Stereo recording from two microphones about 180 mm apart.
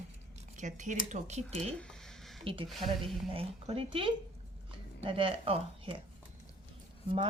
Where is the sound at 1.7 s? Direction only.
5° left (ahead or behind).